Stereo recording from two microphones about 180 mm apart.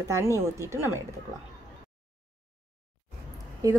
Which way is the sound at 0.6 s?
15° right (ahead or behind).